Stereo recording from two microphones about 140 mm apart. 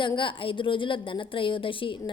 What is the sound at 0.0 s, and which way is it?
A woman's voice, 35° left (ahead or behind).